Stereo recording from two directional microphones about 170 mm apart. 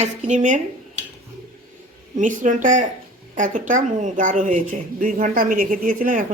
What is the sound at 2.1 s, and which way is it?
Speech, 50° right (ahead or behind).